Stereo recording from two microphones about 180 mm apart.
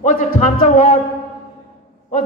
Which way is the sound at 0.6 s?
45° left (ahead or behind).